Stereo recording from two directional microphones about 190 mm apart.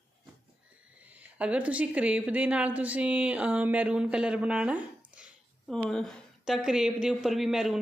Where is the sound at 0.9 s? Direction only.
5° right (ahead or behind).